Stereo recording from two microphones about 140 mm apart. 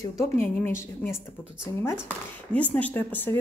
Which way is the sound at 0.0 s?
25° left (ahead or behind).